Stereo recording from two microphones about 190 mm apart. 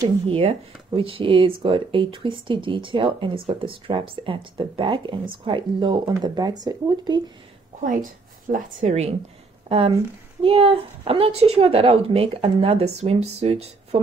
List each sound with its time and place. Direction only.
0.3 s speech: 30° right (ahead or behind)
7.8 s a woman's voice: 45° right (ahead or behind)
8.8 s speech: 35° right (ahead or behind)